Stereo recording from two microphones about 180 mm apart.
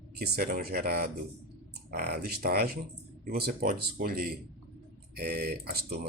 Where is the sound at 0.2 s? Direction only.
55° right (ahead or behind).